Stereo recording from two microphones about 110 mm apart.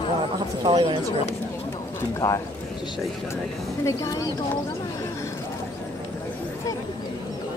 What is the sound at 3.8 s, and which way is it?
Speech, 30° left (ahead or behind).